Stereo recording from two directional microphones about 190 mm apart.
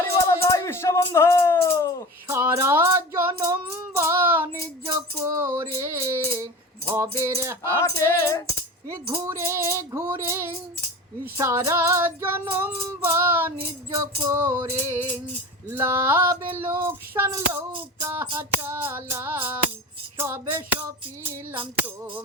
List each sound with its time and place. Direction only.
0.0 s music: 15° left (ahead or behind)
2.2 s a sound: 15° right (ahead or behind)
3.4 s child singing: 15° right (ahead or behind)
4.9 s music: 15° right (ahead or behind)
6.9 s child singing: 15° right (ahead or behind)
7.6 s music: 15° left (ahead or behind)
9.2 s child singing: 15° right (ahead or behind)